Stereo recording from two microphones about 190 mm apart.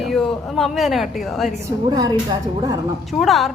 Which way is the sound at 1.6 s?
20° right (ahead or behind).